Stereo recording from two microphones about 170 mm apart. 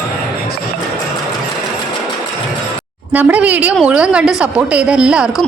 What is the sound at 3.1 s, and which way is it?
A woman's voice, 10° right (ahead or behind).